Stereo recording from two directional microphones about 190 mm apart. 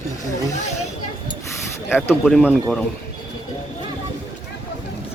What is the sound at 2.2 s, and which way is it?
Speech, centre (ahead or behind).